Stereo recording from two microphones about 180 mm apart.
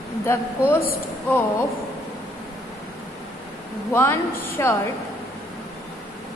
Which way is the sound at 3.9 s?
15° left (ahead or behind).